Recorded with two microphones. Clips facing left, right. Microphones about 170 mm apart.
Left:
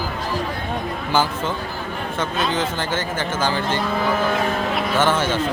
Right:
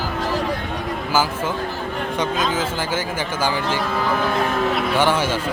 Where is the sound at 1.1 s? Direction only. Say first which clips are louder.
Even; 5° right (ahead or behind).